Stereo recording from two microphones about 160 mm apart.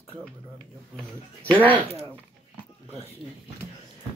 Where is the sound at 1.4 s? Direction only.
10° left (ahead or behind).